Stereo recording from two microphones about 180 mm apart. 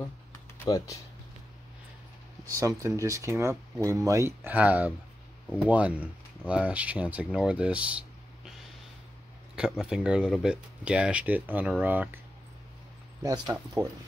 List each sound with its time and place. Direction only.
0.7 s speech: 20° left (ahead or behind)
2.4 s speech: 15° right (ahead or behind)
9.6 s speech: 5° right (ahead or behind)
13.2 s speech: 20° right (ahead or behind)